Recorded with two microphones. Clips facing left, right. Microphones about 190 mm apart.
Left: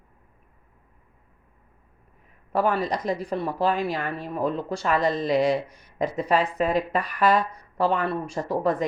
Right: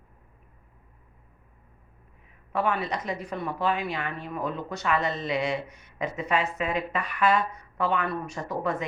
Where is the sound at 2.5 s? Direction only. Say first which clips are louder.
Left 4 dB; 35° left (ahead or behind).